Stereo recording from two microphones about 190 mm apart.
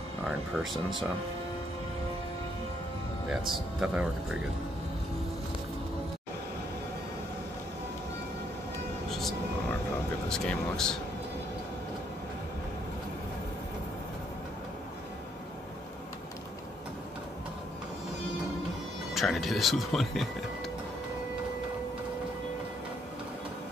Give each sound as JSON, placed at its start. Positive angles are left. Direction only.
{"t": 3.3, "sound": "speech", "side_deg": -5}
{"t": 10.2, "sound": "speech", "side_deg": 5}
{"t": 19.1, "sound": "speech", "side_deg": 0}